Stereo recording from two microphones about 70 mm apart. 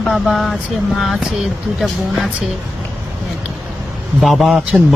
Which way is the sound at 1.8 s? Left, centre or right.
Centre.